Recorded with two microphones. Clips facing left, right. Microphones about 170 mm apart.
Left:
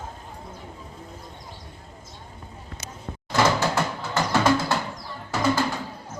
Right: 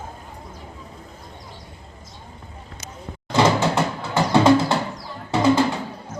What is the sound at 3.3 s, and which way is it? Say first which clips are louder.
Door: right 3 dB; 25° right (ahead or behind).